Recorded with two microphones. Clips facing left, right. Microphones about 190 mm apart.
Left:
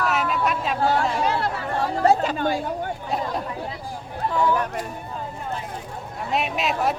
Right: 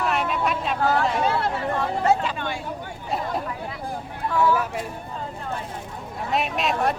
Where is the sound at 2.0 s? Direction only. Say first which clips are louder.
Left 5 dB; 40° left (ahead or behind).